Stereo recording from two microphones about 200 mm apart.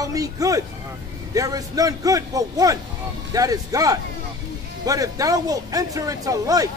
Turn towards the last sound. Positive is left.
turn(degrees=-15)  # may be behind; listen again after turning